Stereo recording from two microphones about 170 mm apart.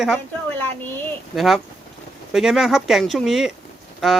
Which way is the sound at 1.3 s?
Centre (ahead or behind).